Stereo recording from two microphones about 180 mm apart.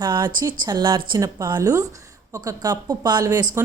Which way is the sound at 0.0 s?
25° right (ahead or behind).